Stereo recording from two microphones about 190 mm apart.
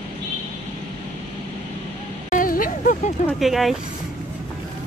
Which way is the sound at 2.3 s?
45° left (ahead or behind).